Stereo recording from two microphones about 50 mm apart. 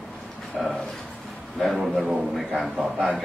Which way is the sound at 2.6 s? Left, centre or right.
Centre.